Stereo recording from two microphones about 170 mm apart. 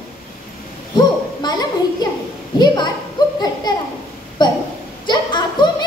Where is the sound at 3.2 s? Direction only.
25° left (ahead or behind).